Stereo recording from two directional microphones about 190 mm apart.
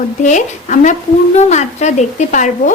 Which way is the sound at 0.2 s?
40° left (ahead or behind).